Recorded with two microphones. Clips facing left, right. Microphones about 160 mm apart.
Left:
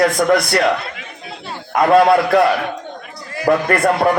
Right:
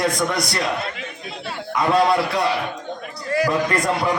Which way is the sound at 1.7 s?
55° left (ahead or behind).